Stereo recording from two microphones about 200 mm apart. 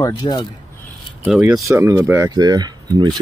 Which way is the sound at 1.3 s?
Centre (ahead or behind).